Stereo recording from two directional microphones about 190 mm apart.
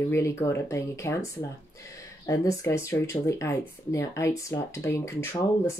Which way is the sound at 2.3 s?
15° left (ahead or behind).